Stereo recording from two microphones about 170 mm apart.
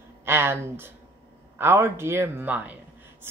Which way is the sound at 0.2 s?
15° right (ahead or behind).